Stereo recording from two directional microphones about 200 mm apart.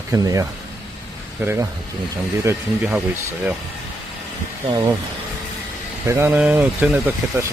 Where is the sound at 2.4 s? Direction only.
10° right (ahead or behind).